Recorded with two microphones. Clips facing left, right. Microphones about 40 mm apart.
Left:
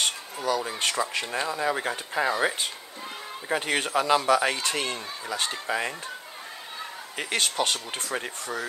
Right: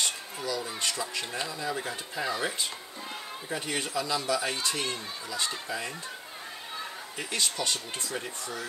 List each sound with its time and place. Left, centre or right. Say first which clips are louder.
0.0 s speech: left 4 dB; left
7.2 s speech: left 5 dB; left